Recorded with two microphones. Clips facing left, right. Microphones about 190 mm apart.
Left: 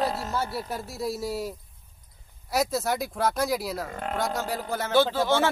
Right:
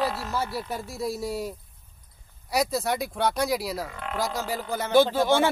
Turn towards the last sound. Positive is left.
turn(degrees=-15)  # may be behind; listen again after turning